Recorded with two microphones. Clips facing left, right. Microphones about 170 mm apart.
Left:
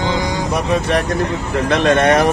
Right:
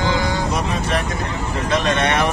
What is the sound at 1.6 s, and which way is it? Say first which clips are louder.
Speech: left 6 dB; 60° left (ahead or behind).